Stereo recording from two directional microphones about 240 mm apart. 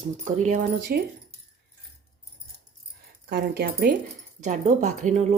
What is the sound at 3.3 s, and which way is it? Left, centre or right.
Speech, right.